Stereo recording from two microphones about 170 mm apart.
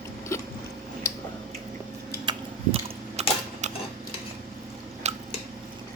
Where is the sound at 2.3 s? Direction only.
25° right (ahead or behind).